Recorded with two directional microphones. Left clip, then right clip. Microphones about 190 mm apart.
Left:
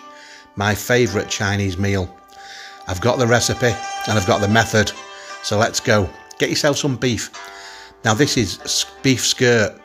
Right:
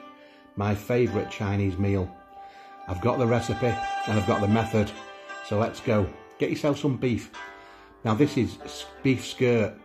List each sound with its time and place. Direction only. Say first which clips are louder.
0.6 s speech: left 8 dB; 25° left (ahead or behind)